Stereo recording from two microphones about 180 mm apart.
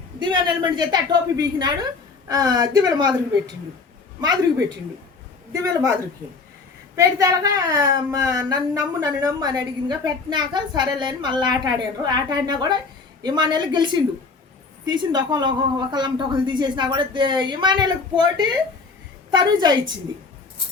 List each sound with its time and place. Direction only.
0.2 s a woman's voice: 25° right (ahead or behind)
5.6 s a woman's voice: 20° right (ahead or behind)
6.9 s a woman's voice: 15° right (ahead or behind)